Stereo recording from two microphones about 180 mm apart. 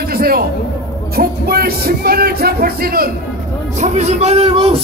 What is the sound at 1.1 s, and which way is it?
Speech, 55° right (ahead or behind).